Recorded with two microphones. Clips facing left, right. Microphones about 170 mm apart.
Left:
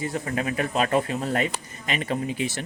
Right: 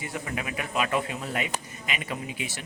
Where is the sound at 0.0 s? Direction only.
35° left (ahead or behind).